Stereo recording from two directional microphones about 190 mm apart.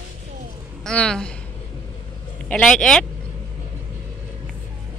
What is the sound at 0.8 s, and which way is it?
Speech, 5° left (ahead or behind).